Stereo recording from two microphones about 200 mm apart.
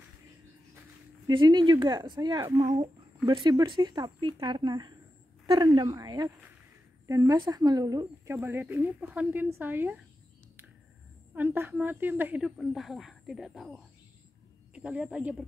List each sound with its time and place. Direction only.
1.2 s speech: 25° right (ahead or behind)
11.3 s a woman's voice: 10° right (ahead or behind)